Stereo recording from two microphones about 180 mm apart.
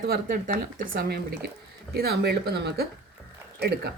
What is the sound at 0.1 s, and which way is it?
Speech, 50° right (ahead or behind).